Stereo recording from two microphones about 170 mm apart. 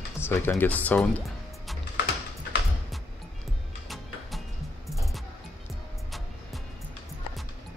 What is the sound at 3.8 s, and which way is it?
Music, centre (ahead or behind).